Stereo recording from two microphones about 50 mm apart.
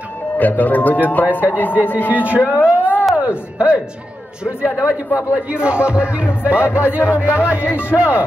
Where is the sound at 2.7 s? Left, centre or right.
Right.